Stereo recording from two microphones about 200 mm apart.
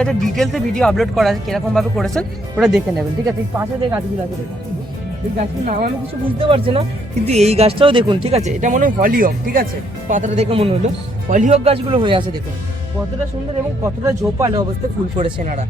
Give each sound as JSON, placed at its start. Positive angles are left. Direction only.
{"t": 0.0, "sound": "speech", "side_deg": 0}
{"t": 5.4, "sound": "speech", "side_deg": -35}
{"t": 13.8, "sound": "speech", "side_deg": -15}
{"t": 15.2, "sound": "speech", "side_deg": -35}